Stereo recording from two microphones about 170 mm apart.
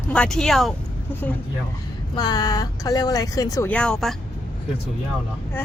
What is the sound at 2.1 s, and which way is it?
Speech, 25° left (ahead or behind).